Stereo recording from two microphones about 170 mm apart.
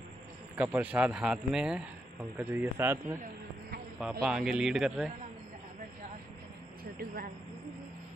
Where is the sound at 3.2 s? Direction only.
60° right (ahead or behind).